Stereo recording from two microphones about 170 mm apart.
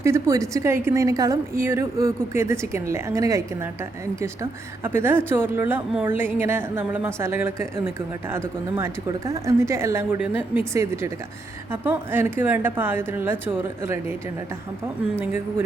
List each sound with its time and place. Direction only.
0.0 s a woman's voice: 15° right (ahead or behind)
4.8 s a woman's voice: 15° right (ahead or behind)
15.2 s a woman's voice: 10° right (ahead or behind)